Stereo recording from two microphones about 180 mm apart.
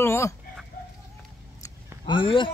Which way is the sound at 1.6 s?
25° left (ahead or behind).